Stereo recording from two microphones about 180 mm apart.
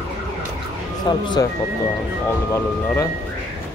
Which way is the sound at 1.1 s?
25° left (ahead or behind).